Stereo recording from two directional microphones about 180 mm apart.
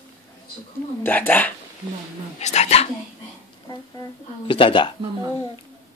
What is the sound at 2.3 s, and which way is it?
Speech, 35° left (ahead or behind).